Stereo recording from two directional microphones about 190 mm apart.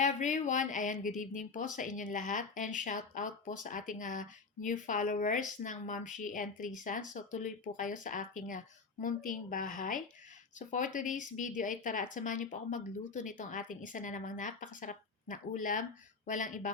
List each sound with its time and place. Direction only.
0.0 s speech: 40° left (ahead or behind)